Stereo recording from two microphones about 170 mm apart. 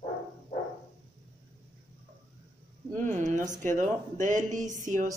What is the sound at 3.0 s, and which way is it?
Speech, 45° right (ahead or behind).